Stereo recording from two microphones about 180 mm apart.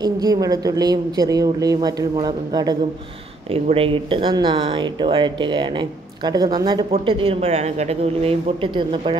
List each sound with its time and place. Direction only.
0.0 s speech: 20° right (ahead or behind)
3.4 s speech: 30° right (ahead or behind)